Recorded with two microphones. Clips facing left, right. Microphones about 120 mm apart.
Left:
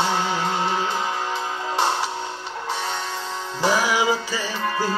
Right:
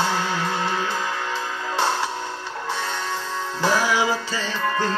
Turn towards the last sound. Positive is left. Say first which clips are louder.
# right 1 dB
turn(degrees=15)  # may be behind; listen again after turning